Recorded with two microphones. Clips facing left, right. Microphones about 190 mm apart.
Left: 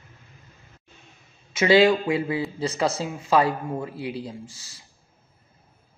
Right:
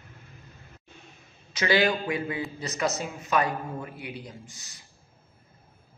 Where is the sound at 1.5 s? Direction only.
25° left (ahead or behind).